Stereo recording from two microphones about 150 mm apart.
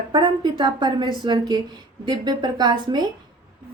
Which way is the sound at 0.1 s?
30° right (ahead or behind).